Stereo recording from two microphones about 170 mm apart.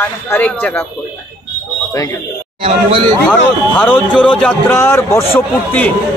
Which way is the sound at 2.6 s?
35° right (ahead or behind).